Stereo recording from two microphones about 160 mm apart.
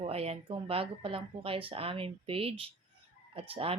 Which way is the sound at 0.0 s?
40° right (ahead or behind).